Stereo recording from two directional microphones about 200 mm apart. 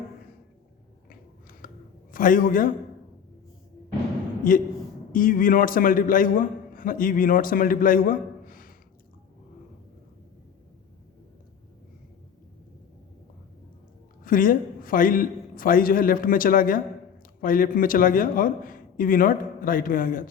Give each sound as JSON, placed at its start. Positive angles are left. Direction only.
{"t": 1.1, "sound": "a sound", "side_deg": 45}
{"t": 2.1, "sound": "a man's voice", "side_deg": 40}
{"t": 4.5, "sound": "a man's voice", "side_deg": 45}
{"t": 14.3, "sound": "a man's voice", "side_deg": 45}